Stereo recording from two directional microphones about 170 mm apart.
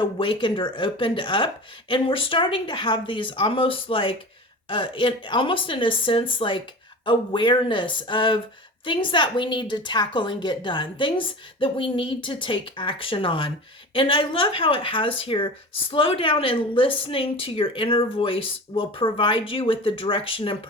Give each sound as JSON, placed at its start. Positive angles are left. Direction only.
{"t": 0.0, "sound": "a woman's voice", "side_deg": 30}